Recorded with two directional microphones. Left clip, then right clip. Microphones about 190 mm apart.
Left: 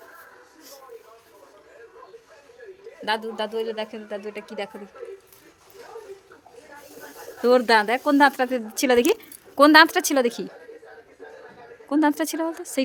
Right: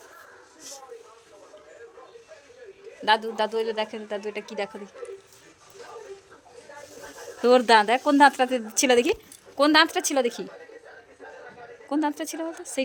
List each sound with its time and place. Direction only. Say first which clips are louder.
3.0 s speech: right 4 dB; 5° right (ahead or behind)
7.4 s speech: even; 5° left (ahead or behind)
9.6 s speech: left 5 dB; 25° left (ahead or behind)
11.9 s speech: left 5 dB; 25° left (ahead or behind)